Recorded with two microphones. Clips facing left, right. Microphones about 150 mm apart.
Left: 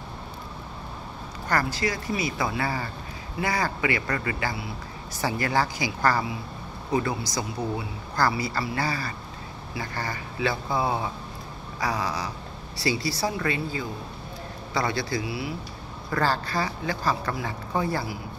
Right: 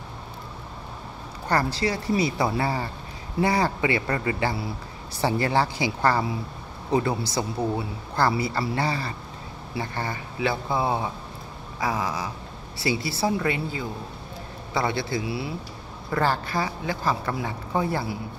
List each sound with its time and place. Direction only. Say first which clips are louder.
1.5 s speech: right 2 dB; 30° right (ahead or behind)